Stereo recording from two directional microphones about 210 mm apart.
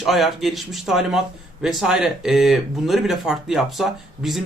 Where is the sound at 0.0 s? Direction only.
Centre (ahead or behind).